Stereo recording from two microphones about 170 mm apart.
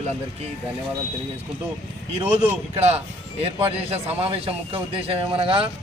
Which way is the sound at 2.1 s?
35° right (ahead or behind).